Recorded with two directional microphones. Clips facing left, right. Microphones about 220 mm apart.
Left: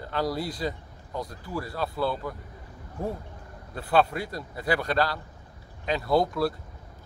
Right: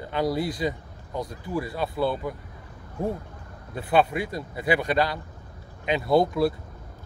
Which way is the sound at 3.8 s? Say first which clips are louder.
Right 2 dB; 20° right (ahead or behind).